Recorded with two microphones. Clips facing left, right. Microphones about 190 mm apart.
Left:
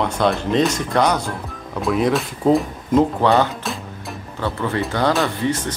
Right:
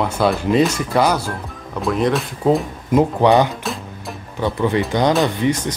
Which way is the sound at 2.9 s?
15° right (ahead or behind).